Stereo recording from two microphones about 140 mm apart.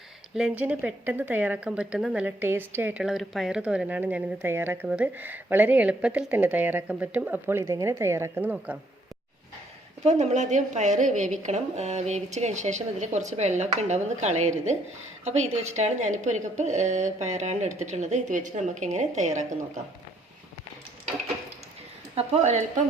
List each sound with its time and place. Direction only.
0.3 s speech: 10° right (ahead or behind)
10.0 s a woman's voice: 50° right (ahead or behind)
22.1 s speech: 50° right (ahead or behind)